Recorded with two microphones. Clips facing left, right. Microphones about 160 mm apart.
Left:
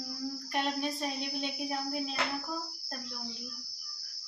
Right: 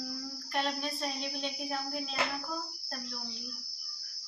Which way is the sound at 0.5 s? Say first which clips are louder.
Left 1 dB; 15° left (ahead or behind).